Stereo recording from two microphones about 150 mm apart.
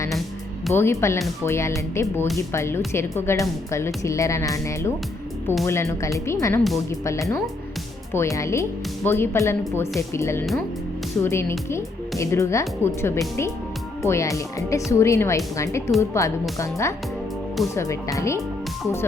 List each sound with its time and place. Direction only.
0.7 s speech: 20° left (ahead or behind)